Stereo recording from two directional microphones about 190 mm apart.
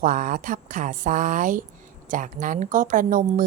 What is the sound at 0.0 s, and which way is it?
Speech, 45° right (ahead or behind).